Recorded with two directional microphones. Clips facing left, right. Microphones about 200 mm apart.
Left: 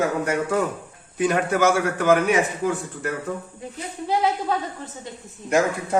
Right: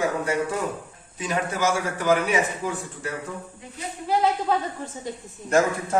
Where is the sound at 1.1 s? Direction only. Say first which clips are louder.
Left 6 dB; 60° left (ahead or behind).